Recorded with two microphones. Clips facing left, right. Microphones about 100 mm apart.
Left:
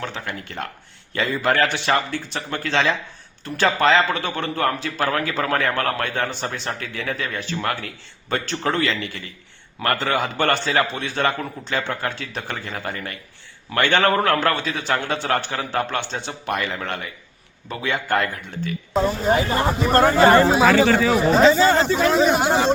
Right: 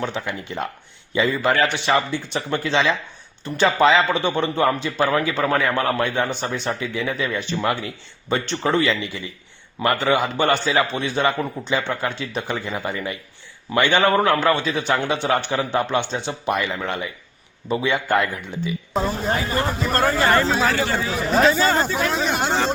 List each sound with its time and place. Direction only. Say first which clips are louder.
0.0 s a man's voice: right 3 dB; 5° right (ahead or behind)
19.0 s speech: left 5 dB; 5° left (ahead or behind)
19.4 s speech: left 3 dB; 20° left (ahead or behind)
21.2 s a man's voice: even; centre (ahead or behind)